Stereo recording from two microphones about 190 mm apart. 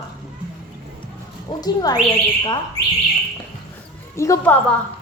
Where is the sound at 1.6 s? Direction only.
20° left (ahead or behind).